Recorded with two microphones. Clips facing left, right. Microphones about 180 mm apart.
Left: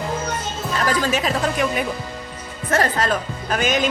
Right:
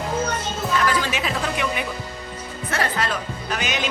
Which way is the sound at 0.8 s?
40° left (ahead or behind).